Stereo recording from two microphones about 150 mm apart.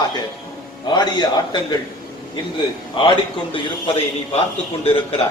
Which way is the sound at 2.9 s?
35° left (ahead or behind).